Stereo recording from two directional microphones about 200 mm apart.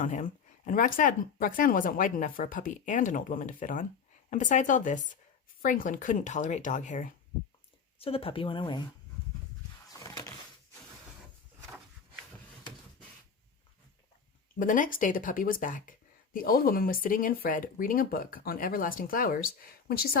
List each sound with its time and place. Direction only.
0.0 s speech: 40° left (ahead or behind)
7.9 s speech: 30° left (ahead or behind)
9.9 s a sound: 20° left (ahead or behind)
14.6 s speech: 40° left (ahead or behind)